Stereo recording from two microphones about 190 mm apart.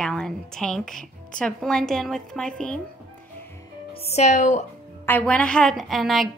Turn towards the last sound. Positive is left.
turn(degrees=0)  # may be behind; listen again after turning